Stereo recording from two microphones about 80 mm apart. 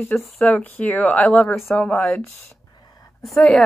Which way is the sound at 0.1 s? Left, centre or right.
Centre.